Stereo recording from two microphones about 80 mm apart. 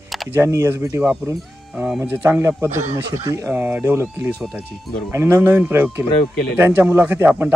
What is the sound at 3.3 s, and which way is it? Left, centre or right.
Speech, right.